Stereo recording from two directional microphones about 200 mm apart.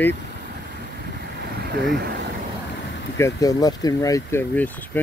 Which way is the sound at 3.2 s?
15° left (ahead or behind).